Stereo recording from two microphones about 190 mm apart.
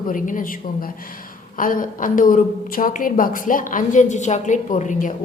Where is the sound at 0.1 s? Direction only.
45° left (ahead or behind).